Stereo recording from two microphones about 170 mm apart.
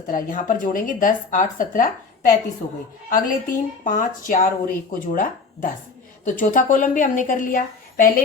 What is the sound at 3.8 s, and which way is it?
Speech, 50° left (ahead or behind).